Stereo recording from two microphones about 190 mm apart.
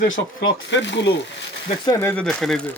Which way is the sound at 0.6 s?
70° left (ahead or behind).